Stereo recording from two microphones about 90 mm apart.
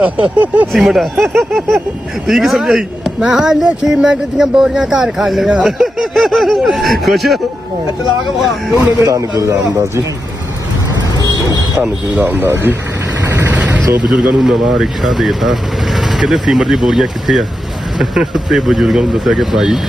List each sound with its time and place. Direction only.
0.0 s speech: 15° right (ahead or behind)
0.7 s speech: centre (ahead or behind)
9.0 s speech: 35° right (ahead or behind)
11.2 s a sound: 50° left (ahead or behind)
11.8 s speech: 15° right (ahead or behind)
13.5 s vehicle: 15° right (ahead or behind)
14.1 s speech: 10° right (ahead or behind)